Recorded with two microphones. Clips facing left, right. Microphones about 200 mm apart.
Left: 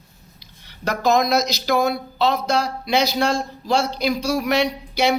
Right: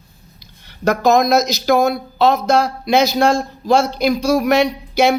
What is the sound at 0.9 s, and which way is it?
Speech, 45° right (ahead or behind).